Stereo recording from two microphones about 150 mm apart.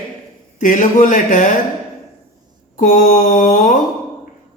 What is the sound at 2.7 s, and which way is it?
Mantra, 60° left (ahead or behind).